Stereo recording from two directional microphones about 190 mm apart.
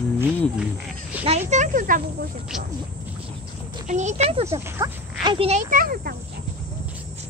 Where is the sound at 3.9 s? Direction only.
40° right (ahead or behind).